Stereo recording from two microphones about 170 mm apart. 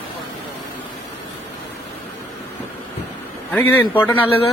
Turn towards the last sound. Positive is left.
turn(degrees=10)  # may be behind; listen again after turning